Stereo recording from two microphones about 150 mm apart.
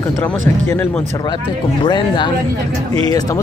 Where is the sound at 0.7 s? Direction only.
10° left (ahead or behind).